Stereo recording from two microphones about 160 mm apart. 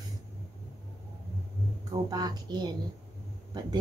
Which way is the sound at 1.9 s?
25° right (ahead or behind).